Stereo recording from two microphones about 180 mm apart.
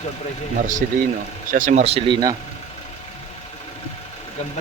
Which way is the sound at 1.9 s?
25° right (ahead or behind).